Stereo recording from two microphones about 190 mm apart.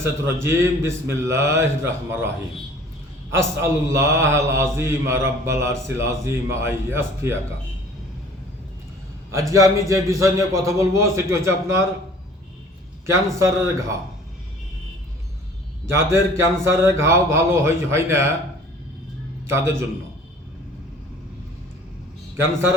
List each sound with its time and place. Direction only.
0.0 s mantra: 15° right (ahead or behind)
3.3 s mantra: 15° right (ahead or behind)
9.3 s mantra: 15° right (ahead or behind)
13.1 s mantra: 15° right (ahead or behind)
15.9 s mantra: 15° right (ahead or behind)
19.5 s mantra: 15° right (ahead or behind)